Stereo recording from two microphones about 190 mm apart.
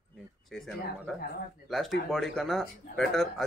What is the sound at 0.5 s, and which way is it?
Speech, centre (ahead or behind).